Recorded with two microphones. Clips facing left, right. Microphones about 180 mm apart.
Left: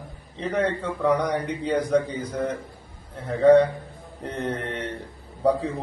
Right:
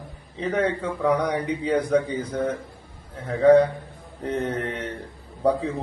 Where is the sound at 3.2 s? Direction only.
5° right (ahead or behind).